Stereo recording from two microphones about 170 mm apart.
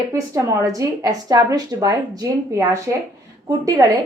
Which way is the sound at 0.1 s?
15° right (ahead or behind).